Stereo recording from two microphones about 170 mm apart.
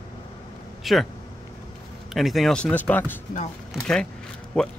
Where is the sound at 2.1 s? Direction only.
Centre (ahead or behind).